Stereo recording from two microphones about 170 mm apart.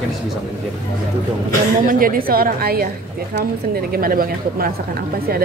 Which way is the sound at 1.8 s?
55° right (ahead or behind).